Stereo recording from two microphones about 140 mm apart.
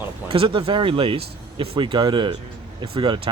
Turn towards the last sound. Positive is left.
turn(degrees=-35)  # may be behind; listen again after turning